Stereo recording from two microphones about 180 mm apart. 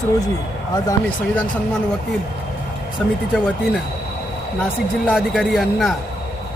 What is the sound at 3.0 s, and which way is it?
Speech, centre (ahead or behind).